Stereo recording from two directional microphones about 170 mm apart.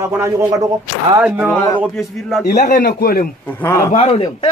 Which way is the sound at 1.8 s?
Centre (ahead or behind).